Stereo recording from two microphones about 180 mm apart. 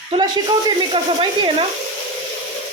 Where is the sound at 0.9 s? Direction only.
25° right (ahead or behind).